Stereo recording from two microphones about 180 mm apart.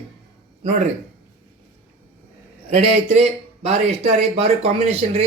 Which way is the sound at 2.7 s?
35° right (ahead or behind).